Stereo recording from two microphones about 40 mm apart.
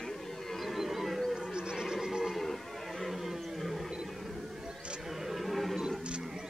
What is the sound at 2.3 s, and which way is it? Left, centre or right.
Music, centre.